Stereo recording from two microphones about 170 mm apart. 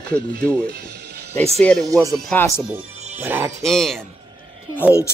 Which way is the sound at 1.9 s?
20° right (ahead or behind).